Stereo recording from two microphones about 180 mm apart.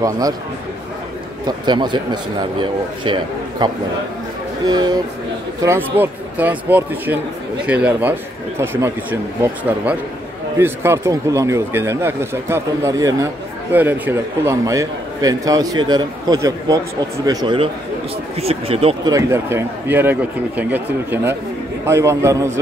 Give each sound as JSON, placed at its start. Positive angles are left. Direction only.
{"t": 1.4, "sound": "a man's voice", "side_deg": -25}
{"t": 18.4, "sound": "speech", "side_deg": -35}
{"t": 19.1, "sound": "speech", "side_deg": -15}